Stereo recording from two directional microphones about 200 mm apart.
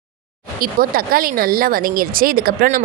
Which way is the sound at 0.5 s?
45° right (ahead or behind).